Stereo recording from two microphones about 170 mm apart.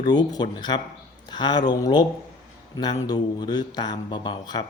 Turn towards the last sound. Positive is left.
turn(degrees=25)  # may be behind; listen again after turning